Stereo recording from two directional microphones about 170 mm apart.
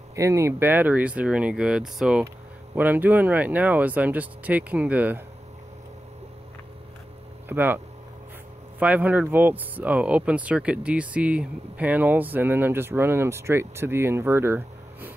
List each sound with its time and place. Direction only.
0.1 s speech: 15° right (ahead or behind)
7.4 s speech: 10° right (ahead or behind)